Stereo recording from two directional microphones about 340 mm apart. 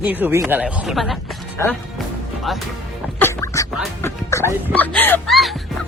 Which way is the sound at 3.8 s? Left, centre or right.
Centre.